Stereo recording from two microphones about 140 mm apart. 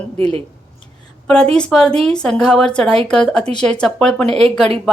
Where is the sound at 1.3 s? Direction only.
5° left (ahead or behind).